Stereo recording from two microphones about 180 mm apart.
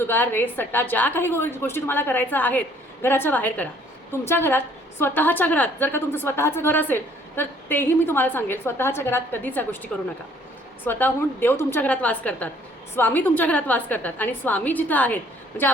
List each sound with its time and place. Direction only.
0.0 s a woman's voice: 10° left (ahead or behind)